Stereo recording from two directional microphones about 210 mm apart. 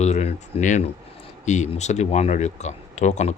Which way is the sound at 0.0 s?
30° left (ahead or behind).